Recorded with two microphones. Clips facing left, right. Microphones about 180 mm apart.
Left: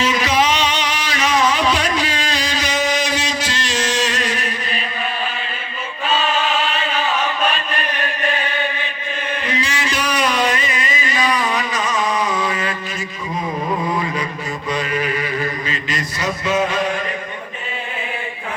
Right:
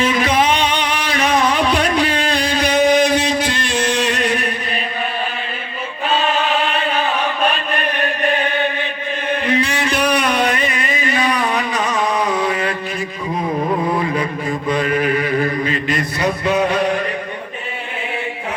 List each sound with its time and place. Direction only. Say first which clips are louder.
0.0 s music: right 2 dB; 55° right (ahead or behind)
6.1 s chant: right 2 dB; 55° right (ahead or behind)
9.4 s a sound: right 5 dB; 60° right (ahead or behind)
14.7 s mantra: right 4 dB; 55° right (ahead or behind)
16.6 s chant: right 4 dB; 60° right (ahead or behind)